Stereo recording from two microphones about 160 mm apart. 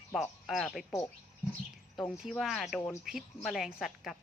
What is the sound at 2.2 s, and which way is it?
Speech, centre (ahead or behind).